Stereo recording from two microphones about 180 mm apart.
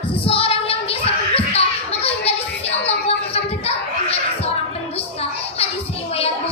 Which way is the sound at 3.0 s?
35° left (ahead or behind).